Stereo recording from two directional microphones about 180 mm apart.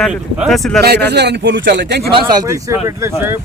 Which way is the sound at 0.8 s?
65° right (ahead or behind).